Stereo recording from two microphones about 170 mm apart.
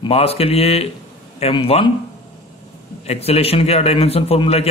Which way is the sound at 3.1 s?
35° left (ahead or behind).